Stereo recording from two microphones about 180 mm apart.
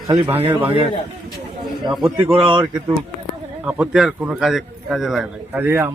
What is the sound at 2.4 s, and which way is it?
Speech, 30° right (ahead or behind).